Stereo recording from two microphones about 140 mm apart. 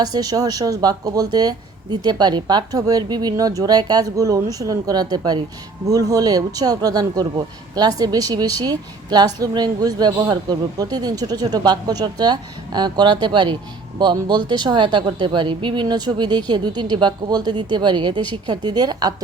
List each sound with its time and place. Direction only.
0.0 s a woman's voice: 25° right (ahead or behind)